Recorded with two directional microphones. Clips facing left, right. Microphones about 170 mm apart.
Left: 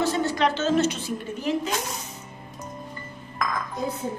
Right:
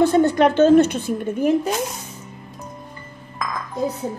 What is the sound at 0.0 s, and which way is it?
A woman's voice, 55° right (ahead or behind).